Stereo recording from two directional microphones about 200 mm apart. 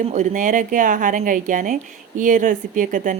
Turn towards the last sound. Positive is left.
turn(degrees=-40)  # may be behind; listen again after turning